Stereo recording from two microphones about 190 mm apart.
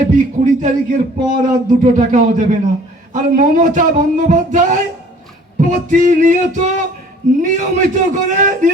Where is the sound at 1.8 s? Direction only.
40° right (ahead or behind).